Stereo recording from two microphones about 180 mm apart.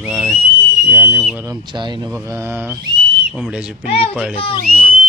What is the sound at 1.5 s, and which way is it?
Speech, 25° right (ahead or behind).